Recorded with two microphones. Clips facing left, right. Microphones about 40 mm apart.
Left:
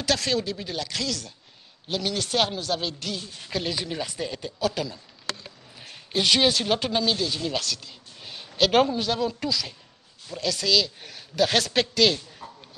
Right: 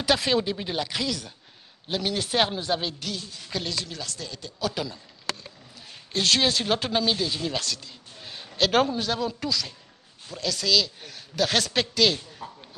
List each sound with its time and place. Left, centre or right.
0.0 s speech: centre
2.9 s speech: centre
3.4 s speech: centre
3.8 s speech: left
4.6 s speech: centre
6.1 s speech: centre